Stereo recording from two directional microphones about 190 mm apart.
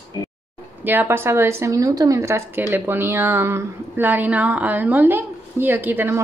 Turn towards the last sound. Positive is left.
turn(degrees=-10)  # may be behind; listen again after turning